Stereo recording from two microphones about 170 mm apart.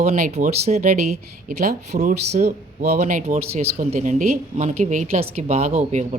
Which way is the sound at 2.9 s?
50° right (ahead or behind).